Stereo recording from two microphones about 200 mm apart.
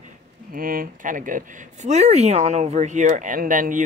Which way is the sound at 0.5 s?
45° right (ahead or behind).